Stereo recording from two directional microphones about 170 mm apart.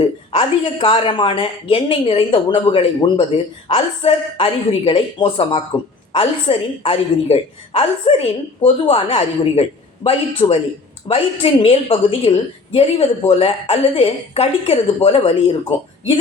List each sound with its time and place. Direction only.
0.0 s a woman's voice: 35° left (ahead or behind)